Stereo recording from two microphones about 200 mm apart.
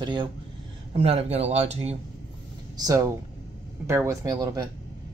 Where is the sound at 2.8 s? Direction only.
15° right (ahead or behind).